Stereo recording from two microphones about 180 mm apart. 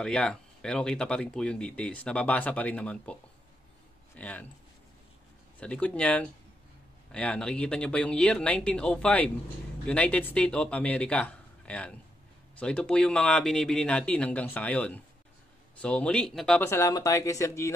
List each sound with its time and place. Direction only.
0.0 s speech: 5° left (ahead or behind)
4.2 s speech: 10° left (ahead or behind)
5.6 s speech: 5° left (ahead or behind)
16.6 s speech: 15° left (ahead or behind)